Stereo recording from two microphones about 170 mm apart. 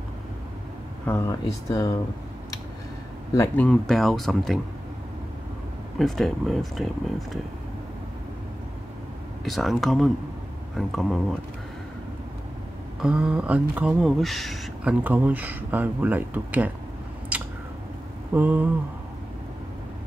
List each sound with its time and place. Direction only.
1.0 s speech: 15° left (ahead or behind)
3.3 s speech: 10° left (ahead or behind)
5.9 s speech: centre (ahead or behind)
9.4 s speech: centre (ahead or behind)
13.0 s speech: 5° right (ahead or behind)
17.3 s a sound: 10° right (ahead or behind)
18.3 s speech: 10° right (ahead or behind)